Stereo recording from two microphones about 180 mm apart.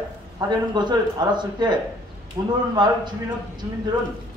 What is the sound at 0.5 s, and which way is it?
Speech, 25° right (ahead or behind).